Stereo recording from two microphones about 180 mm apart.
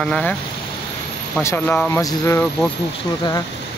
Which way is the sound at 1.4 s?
15° left (ahead or behind).